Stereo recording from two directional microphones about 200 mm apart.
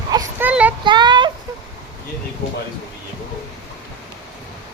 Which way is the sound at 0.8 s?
20° right (ahead or behind).